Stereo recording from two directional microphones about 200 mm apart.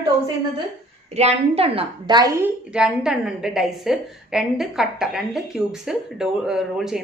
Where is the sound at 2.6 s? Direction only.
5° right (ahead or behind).